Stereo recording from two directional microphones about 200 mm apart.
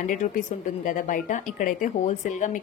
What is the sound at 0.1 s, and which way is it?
A woman's voice, 40° left (ahead or behind).